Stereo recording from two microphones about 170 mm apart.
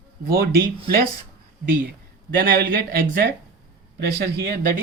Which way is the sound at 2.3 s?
60° right (ahead or behind).